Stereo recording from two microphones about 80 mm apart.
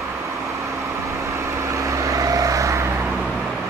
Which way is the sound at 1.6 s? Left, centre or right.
Right.